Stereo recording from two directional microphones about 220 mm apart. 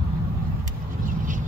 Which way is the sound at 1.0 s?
35° right (ahead or behind).